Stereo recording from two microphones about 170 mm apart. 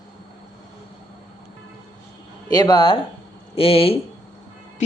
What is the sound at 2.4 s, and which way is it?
Speech, 25° left (ahead or behind).